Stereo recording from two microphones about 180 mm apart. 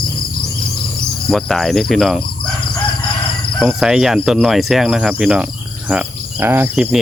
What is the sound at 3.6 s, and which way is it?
Speech, centre (ahead or behind).